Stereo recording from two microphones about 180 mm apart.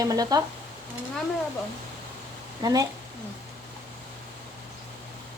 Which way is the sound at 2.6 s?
20° right (ahead or behind).